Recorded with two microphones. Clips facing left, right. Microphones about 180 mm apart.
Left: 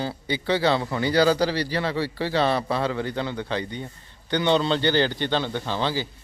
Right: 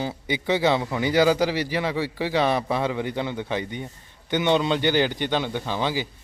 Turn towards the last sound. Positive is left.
turn(degrees=-15)  # may be behind; listen again after turning